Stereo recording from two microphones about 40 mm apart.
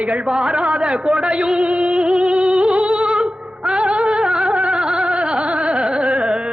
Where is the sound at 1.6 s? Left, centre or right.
Right.